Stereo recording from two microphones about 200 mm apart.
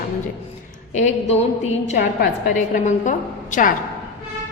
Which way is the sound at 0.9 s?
35° left (ahead or behind).